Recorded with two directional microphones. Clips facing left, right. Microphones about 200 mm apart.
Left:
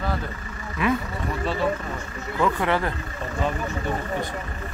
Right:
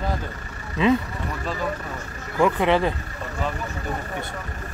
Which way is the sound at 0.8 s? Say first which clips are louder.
Right 4 dB; 25° right (ahead or behind).